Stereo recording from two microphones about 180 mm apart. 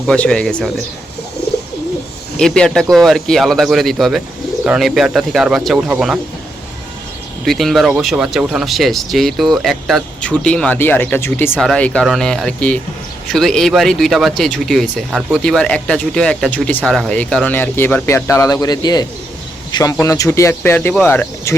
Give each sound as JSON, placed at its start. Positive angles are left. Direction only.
{"t": 0.0, "sound": "speech", "side_deg": 5}
{"t": 2.4, "sound": "speech", "side_deg": 5}
{"t": 7.4, "sound": "speech", "side_deg": 0}